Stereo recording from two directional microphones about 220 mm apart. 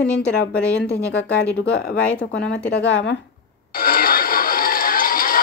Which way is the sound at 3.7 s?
40° left (ahead or behind).